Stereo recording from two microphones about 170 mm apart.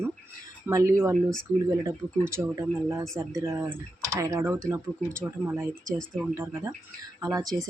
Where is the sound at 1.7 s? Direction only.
15° right (ahead or behind).